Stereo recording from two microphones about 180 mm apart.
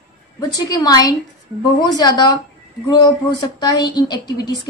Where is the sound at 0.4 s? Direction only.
20° left (ahead or behind).